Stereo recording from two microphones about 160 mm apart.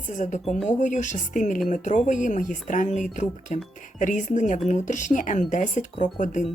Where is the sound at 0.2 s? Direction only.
50° left (ahead or behind).